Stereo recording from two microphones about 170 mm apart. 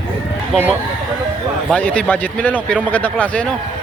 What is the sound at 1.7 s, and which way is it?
Speech, 10° left (ahead or behind).